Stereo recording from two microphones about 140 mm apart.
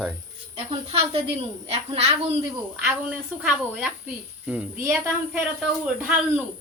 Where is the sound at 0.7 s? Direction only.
45° right (ahead or behind).